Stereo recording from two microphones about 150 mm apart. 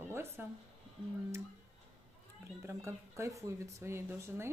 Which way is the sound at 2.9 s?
20° right (ahead or behind).